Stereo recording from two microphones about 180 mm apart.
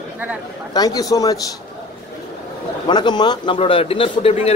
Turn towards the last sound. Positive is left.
turn(degrees=30)  # may be behind; listen again after turning